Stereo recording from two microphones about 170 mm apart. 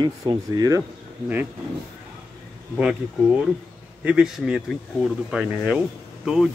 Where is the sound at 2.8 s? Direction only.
5° right (ahead or behind).